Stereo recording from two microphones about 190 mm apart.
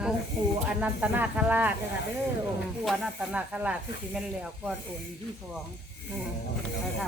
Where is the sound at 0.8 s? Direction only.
10° right (ahead or behind).